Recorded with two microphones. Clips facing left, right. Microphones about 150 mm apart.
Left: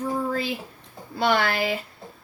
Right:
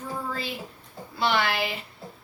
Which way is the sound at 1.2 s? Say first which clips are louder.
Left 3 dB; 50° left (ahead or behind).